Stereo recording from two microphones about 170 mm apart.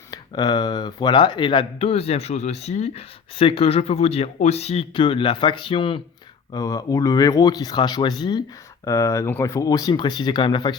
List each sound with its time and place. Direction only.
0.1 s speech: 25° left (ahead or behind)
6.5 s speech: 20° left (ahead or behind)